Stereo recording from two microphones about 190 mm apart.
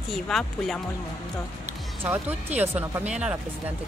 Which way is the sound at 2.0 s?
10° right (ahead or behind).